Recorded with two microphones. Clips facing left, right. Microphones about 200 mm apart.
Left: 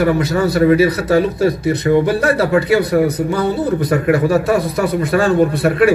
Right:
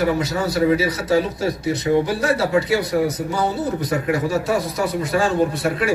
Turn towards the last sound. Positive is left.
turn(degrees=60)  # may be behind; listen again after turning